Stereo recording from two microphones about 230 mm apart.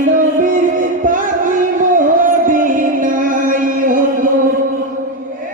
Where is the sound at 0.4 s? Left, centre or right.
Right.